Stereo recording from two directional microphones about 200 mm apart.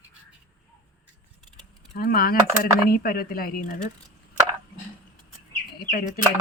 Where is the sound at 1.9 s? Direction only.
50° left (ahead or behind).